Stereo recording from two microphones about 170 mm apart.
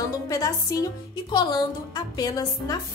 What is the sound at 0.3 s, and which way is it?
A woman's voice, 20° left (ahead or behind).